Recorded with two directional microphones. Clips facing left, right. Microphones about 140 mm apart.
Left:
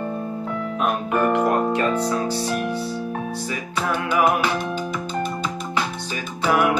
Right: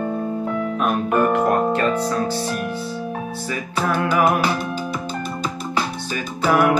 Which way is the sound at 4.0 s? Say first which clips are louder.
Right 1 dB; 35° right (ahead or behind).